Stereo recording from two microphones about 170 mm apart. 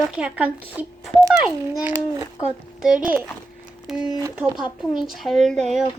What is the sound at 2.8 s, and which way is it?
Speech, 5° right (ahead or behind).